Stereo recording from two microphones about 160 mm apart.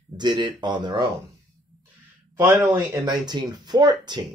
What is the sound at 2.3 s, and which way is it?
Speech, 15° right (ahead or behind).